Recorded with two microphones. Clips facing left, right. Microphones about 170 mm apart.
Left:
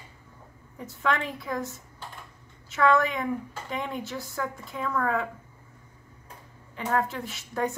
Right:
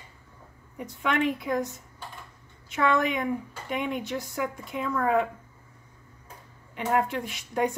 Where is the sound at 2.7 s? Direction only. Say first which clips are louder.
Left 2 dB; 15° right (ahead or behind).